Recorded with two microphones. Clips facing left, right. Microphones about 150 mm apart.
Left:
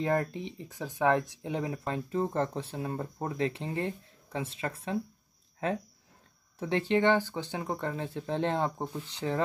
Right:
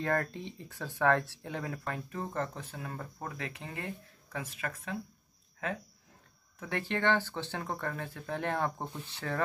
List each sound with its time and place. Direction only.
0.0 s speech: 15° left (ahead or behind)
6.6 s speech: 20° left (ahead or behind)